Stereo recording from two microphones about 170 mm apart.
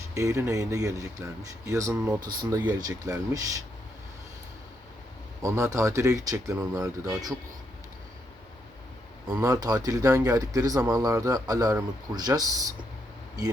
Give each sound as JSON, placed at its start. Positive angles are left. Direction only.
{"t": 0.1, "sound": "speech", "side_deg": -20}
{"t": 5.4, "sound": "speech", "side_deg": -20}
{"t": 9.3, "sound": "speech", "side_deg": -20}